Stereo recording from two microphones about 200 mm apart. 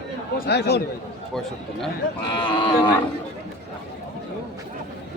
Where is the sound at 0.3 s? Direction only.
55° left (ahead or behind).